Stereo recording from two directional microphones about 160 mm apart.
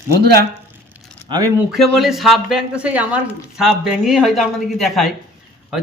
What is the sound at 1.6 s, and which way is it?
A woman's voice, 5° right (ahead or behind).